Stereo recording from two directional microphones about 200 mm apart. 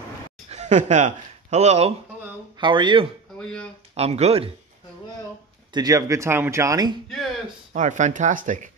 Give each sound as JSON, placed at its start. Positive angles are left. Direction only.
{"t": 0.5, "sound": "speech", "side_deg": -35}
{"t": 3.3, "sound": "speech", "side_deg": 5}
{"t": 3.9, "sound": "speech", "side_deg": -30}
{"t": 5.7, "sound": "speech", "side_deg": -20}
{"t": 7.1, "sound": "speech", "side_deg": 0}
{"t": 7.7, "sound": "speech", "side_deg": -40}